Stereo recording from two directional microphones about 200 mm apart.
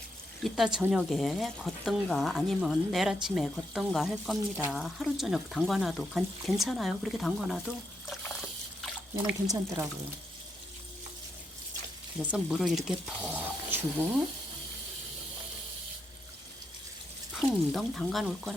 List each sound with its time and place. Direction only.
0.4 s speech: centre (ahead or behind)
9.5 s speech: 15° right (ahead or behind)
12.3 s speech: centre (ahead or behind)
17.3 s speech: centre (ahead or behind)